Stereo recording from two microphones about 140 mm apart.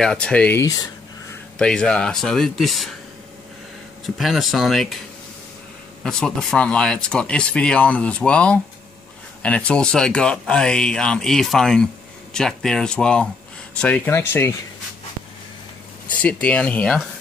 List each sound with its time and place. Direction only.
0.0 s speech: 5° left (ahead or behind)
1.6 s speech: 5° left (ahead or behind)
4.0 s speech: centre (ahead or behind)
6.0 s speech: 5° left (ahead or behind)
16.2 s speech: 10° left (ahead or behind)